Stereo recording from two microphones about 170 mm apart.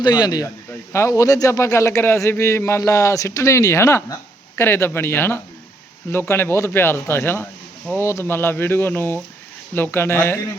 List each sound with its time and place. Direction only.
0.0 s a man's voice: 25° left (ahead or behind)